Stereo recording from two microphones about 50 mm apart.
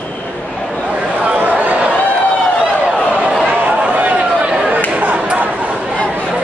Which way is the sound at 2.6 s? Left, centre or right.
Right.